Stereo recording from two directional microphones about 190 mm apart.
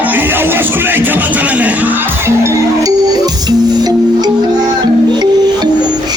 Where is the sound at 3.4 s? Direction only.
20° right (ahead or behind).